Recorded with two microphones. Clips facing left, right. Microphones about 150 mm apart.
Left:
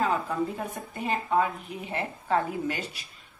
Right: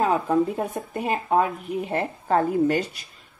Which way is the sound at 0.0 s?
45° right (ahead or behind).